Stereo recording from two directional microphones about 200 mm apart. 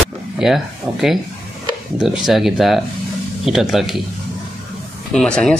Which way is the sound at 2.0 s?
Centre (ahead or behind).